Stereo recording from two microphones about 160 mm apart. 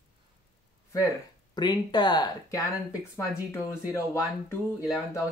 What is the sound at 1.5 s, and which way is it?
Speech, 25° left (ahead or behind).